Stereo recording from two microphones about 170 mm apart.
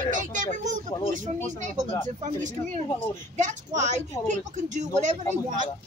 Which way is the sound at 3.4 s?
45° right (ahead or behind).